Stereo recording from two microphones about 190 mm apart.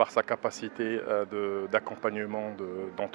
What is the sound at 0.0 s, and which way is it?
Speech, 15° right (ahead or behind).